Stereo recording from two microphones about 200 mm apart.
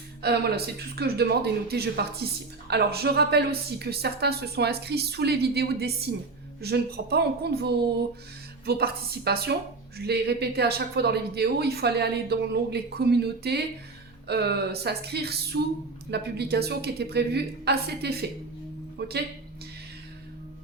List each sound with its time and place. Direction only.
0.2 s a woman's voice: 55° right (ahead or behind)